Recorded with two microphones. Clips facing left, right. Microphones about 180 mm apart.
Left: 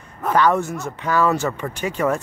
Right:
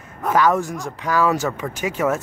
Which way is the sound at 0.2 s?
5° right (ahead or behind).